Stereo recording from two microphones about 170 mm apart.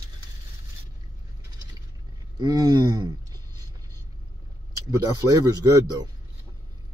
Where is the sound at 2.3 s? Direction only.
25° right (ahead or behind).